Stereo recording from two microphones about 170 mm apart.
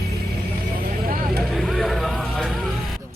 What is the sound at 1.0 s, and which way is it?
Vehicle, 60° right (ahead or behind).